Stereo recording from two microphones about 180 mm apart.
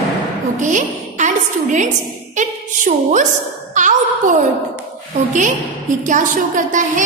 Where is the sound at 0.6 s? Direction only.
45° right (ahead or behind).